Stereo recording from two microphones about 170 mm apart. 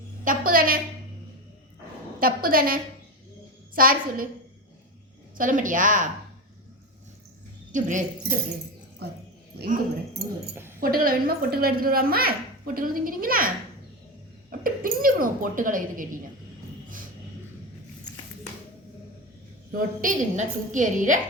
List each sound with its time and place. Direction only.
0.3 s speech: 60° right (ahead or behind)
2.1 s a woman's voice: 60° right (ahead or behind)
5.4 s speech: 50° right (ahead or behind)
7.7 s speech: 50° right (ahead or behind)
9.0 s speech: 70° right (ahead or behind)
9.6 s speech: 55° right (ahead or behind)
10.5 s speech: 15° right (ahead or behind)
10.8 s speech: 55° right (ahead or behind)
14.6 s speech: 55° right (ahead or behind)
19.7 s speech: 50° right (ahead or behind)